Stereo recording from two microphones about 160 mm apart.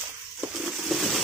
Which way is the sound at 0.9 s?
Centre (ahead or behind).